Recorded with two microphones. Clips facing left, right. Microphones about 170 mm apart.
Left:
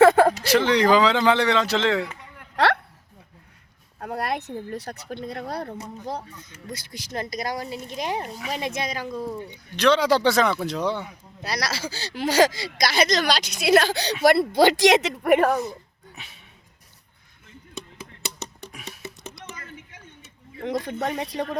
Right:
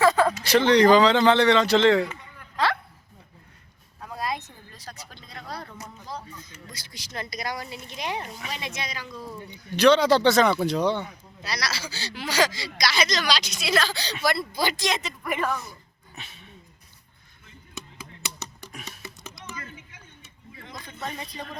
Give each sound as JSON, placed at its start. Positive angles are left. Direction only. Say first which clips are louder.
{"t": 0.0, "sound": "a sound", "louder": "left 5 dB", "side_deg": 55}
{"t": 0.4, "sound": "speech", "louder": "right 2 dB", "side_deg": 5}
{"t": 2.6, "sound": "a sound", "louder": "left 4 dB", "side_deg": 70}
{"t": 4.0, "sound": "speech", "louder": "left 4 dB", "side_deg": 65}
{"t": 9.7, "sound": "speech", "louder": "right 2 dB", "side_deg": 0}
{"t": 10.0, "sound": "speech", "louder": "right 1 dB", "side_deg": 10}
{"t": 11.4, "sound": "speech", "louder": "left 4 dB", "side_deg": 50}
{"t": 18.7, "sound": "typing", "louder": "left 1 dB", "side_deg": 10}
{"t": 20.6, "sound": "speech", "louder": "left 11 dB", "side_deg": 80}